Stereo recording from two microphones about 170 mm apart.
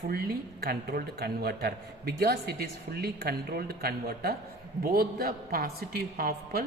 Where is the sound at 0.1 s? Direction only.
60° right (ahead or behind).